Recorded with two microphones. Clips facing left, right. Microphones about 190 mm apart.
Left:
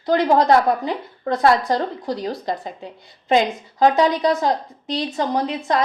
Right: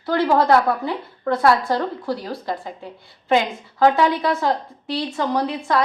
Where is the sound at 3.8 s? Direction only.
20° left (ahead or behind).